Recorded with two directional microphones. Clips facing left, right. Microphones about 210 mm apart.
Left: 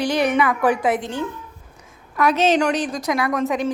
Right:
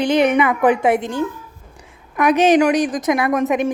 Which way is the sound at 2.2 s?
15° right (ahead or behind).